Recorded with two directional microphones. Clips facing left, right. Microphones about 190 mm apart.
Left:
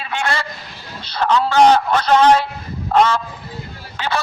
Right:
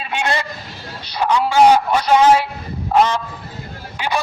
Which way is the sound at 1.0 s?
15° right (ahead or behind).